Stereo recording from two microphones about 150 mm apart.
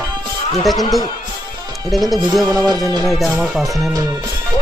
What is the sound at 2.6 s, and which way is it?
Music, 25° right (ahead or behind).